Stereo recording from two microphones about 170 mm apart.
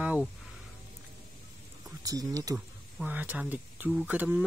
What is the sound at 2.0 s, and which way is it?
Speech, 20° right (ahead or behind).